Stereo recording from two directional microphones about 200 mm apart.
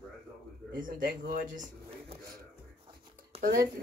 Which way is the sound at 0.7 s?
45° right (ahead or behind).